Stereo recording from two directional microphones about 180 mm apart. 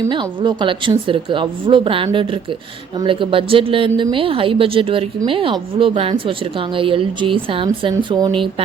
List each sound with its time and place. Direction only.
0.1 s a woman's voice: 25° right (ahead or behind)